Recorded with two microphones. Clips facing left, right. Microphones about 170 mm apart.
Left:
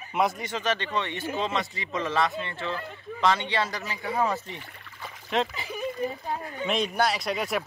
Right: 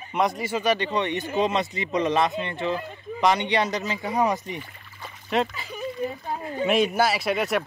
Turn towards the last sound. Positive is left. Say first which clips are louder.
# right 4 dB
turn(degrees=0)  # may be behind; listen again after turning